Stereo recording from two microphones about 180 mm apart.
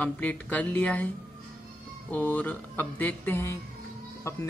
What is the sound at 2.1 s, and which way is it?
Speech, 10° left (ahead or behind).